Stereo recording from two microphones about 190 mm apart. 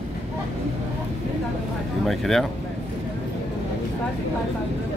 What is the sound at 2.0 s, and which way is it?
Speech, centre (ahead or behind).